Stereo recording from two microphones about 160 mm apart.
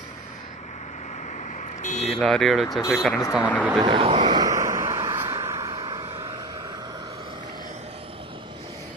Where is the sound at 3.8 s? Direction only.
35° right (ahead or behind).